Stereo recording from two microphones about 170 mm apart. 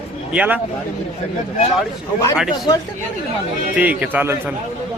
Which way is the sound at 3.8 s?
10° right (ahead or behind).